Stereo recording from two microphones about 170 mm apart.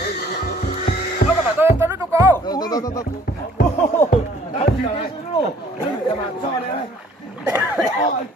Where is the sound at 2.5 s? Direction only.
25° left (ahead or behind).